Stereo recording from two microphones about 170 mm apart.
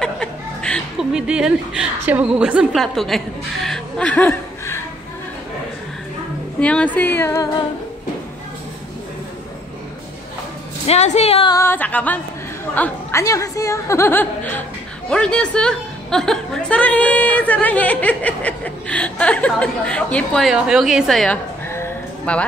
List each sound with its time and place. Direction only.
0.0 s chuckle: 5° left (ahead or behind)
1.1 s a woman's voice: 5° right (ahead or behind)
3.6 s chuckle: 5° left (ahead or behind)
6.6 s a woman's voice: 5° left (ahead or behind)
10.9 s a woman's voice: 40° left (ahead or behind)
11.5 s a woman's voice: 15° left (ahead or behind)
21.6 s a sound: 15° left (ahead or behind)